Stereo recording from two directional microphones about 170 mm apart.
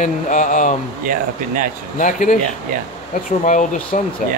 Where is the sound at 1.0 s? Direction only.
55° right (ahead or behind).